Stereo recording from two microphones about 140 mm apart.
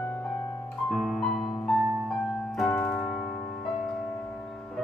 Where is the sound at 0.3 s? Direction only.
Centre (ahead or behind).